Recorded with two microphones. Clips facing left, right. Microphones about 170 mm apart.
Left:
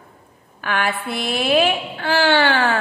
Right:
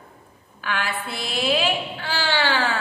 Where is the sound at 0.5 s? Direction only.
55° left (ahead or behind).